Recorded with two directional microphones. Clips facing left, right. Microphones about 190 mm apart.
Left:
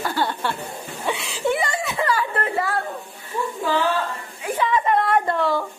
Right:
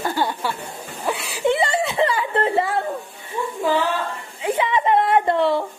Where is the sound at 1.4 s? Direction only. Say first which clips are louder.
Right 3 dB; 30° right (ahead or behind).